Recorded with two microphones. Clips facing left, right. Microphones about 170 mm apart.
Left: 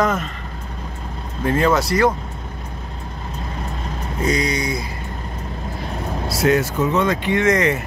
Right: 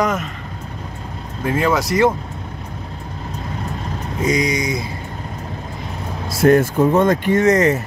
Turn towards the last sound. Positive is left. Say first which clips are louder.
# right 3 dB
turn(degrees=-40)  # may be behind; listen again after turning